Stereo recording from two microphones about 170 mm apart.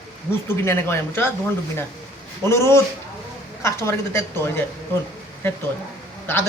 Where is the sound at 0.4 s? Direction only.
15° left (ahead or behind).